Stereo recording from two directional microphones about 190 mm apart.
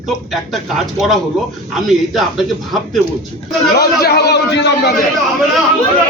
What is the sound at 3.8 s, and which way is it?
A man's voice, 55° left (ahead or behind).